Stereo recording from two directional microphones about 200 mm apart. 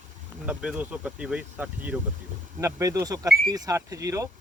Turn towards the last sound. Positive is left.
turn(degrees=-15)  # may be behind; listen again after turning